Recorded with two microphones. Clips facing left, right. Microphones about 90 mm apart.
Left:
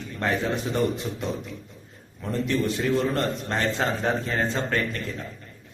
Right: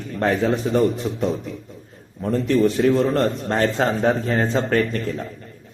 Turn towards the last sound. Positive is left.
turn(degrees=-40)  # may be behind; listen again after turning